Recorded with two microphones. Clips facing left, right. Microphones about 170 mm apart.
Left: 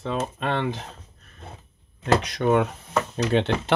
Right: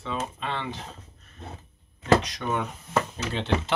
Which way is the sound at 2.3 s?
60° left (ahead or behind).